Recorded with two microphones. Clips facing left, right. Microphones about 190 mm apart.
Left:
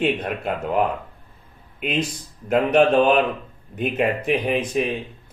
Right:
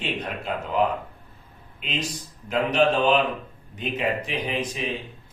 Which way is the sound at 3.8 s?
55° left (ahead or behind).